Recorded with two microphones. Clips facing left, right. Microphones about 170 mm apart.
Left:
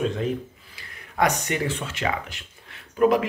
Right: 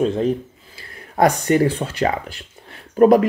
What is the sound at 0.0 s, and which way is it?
Speech, 35° right (ahead or behind).